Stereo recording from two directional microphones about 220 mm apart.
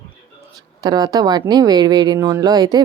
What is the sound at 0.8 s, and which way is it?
A woman's voice, 15° right (ahead or behind).